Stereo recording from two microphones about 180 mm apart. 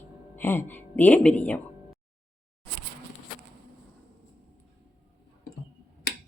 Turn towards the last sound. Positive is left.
turn(degrees=70)  # may be behind; listen again after turning